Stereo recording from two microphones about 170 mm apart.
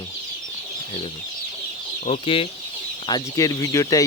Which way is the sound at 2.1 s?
35° left (ahead or behind).